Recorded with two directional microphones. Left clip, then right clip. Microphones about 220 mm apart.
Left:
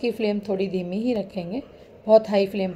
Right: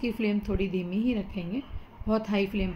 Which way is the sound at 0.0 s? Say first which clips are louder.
Left 6 dB; 15° right (ahead or behind).